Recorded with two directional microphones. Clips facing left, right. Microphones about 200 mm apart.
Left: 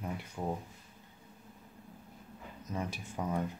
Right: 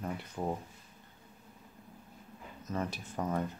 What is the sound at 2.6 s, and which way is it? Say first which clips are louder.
Speech: right 2 dB; 10° left (ahead or behind).